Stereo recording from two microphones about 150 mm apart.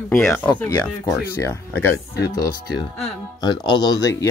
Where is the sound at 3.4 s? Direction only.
30° left (ahead or behind).